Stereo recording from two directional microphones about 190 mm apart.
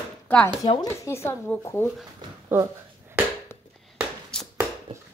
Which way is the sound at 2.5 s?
10° right (ahead or behind).